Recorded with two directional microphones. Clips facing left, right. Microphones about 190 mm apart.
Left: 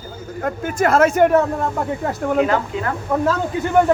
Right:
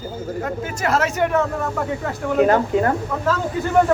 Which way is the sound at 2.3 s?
45° right (ahead or behind).